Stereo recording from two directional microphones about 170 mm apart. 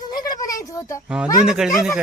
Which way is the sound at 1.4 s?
5° right (ahead or behind).